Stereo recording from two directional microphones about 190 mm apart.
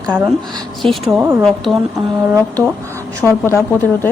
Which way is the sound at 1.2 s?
10° right (ahead or behind).